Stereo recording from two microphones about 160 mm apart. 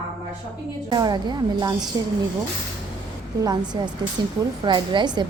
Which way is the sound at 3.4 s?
25° right (ahead or behind).